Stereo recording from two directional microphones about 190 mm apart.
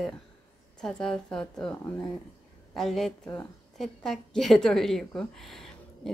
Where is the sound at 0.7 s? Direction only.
5° left (ahead or behind).